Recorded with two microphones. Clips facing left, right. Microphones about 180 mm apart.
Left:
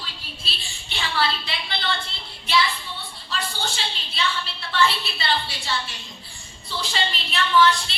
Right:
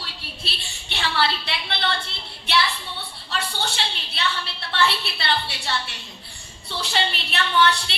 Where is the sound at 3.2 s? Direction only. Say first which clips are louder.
Right 1 dB; 65° right (ahead or behind).